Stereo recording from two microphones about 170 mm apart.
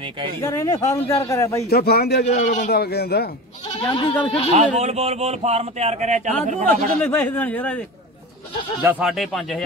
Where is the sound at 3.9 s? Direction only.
35° left (ahead or behind).